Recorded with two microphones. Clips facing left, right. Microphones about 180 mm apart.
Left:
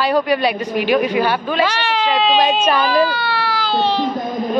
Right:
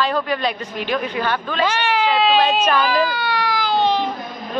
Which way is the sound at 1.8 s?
10° right (ahead or behind).